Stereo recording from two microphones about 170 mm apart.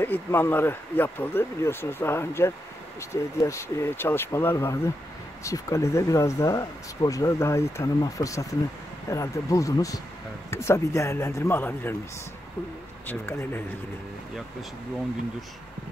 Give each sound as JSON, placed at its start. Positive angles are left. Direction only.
{"t": 0.0, "sound": "speech", "side_deg": 10}
{"t": 13.0, "sound": "speech", "side_deg": 10}